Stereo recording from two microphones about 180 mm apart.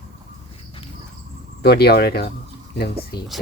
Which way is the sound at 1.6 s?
60° left (ahead or behind).